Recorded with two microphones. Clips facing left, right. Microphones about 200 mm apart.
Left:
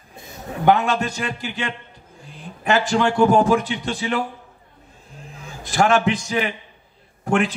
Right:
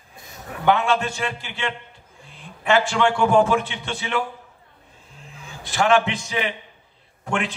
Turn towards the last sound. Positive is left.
turn(degrees=40)  # may be behind; listen again after turning